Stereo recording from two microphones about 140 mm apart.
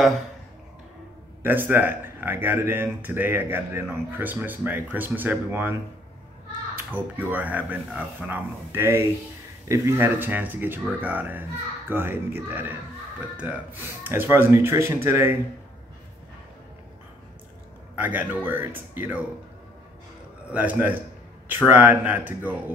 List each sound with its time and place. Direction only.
1.4 s speech: 15° right (ahead or behind)
6.9 s speech: 10° right (ahead or behind)
17.9 s speech: 10° right (ahead or behind)
20.4 s speech: 10° right (ahead or behind)